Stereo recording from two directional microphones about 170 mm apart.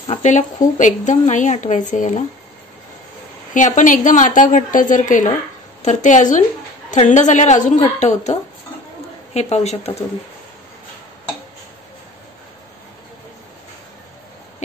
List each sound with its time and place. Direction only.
0.2 s speech: 45° left (ahead or behind)
3.5 s speech: 50° left (ahead or behind)